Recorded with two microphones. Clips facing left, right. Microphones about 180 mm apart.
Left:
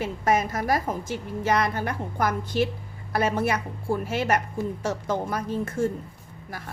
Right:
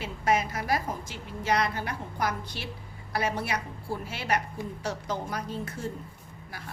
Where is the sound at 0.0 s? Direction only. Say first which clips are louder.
Left 3 dB; 45° left (ahead or behind).